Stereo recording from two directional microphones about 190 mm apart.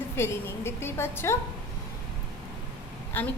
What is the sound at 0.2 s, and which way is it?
A woman's voice, 15° left (ahead or behind).